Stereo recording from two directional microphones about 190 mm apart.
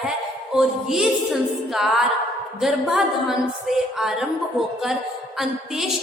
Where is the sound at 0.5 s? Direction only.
Centre (ahead or behind).